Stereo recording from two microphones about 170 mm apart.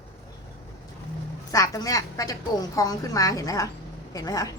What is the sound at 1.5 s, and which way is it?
A woman's voice, 20° left (ahead or behind).